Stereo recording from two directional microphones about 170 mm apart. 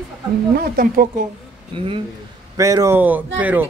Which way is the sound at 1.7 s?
30° right (ahead or behind).